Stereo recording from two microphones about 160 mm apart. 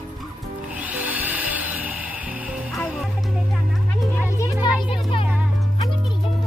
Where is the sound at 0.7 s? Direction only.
10° right (ahead or behind).